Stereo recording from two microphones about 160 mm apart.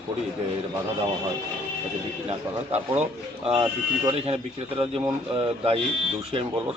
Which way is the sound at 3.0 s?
35° right (ahead or behind).